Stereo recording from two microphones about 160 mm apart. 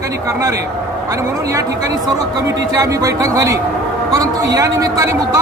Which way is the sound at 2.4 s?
20° right (ahead or behind).